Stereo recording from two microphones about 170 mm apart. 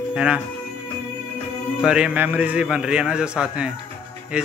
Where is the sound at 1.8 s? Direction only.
5° right (ahead or behind).